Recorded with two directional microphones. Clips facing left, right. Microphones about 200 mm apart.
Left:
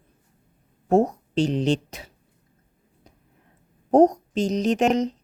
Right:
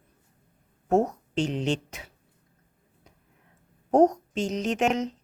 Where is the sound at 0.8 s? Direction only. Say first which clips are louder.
Left 4 dB; 30° left (ahead or behind).